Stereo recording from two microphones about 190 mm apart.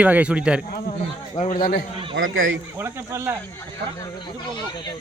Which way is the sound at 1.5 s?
50° left (ahead or behind).